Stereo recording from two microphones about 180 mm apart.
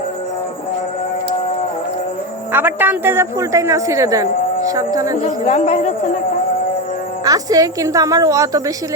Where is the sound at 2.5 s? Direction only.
10° right (ahead or behind).